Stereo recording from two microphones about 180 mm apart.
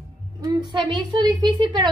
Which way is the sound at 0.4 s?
25° right (ahead or behind).